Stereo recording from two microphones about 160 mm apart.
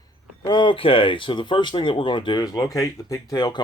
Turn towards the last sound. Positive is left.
turn(degrees=25)  # may be behind; listen again after turning